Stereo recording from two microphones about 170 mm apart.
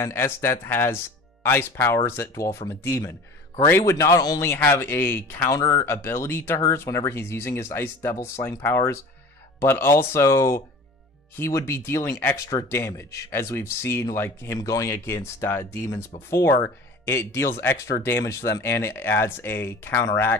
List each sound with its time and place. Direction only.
0.0 s speech: 15° left (ahead or behind)